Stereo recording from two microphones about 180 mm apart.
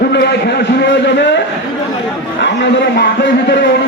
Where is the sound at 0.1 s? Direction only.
70° left (ahead or behind).